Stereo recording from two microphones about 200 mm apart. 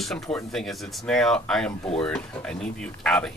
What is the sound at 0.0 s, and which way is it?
Speech, centre (ahead or behind).